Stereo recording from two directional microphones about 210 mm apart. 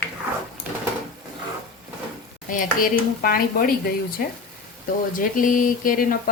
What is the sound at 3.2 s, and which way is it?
Speech, 45° left (ahead or behind).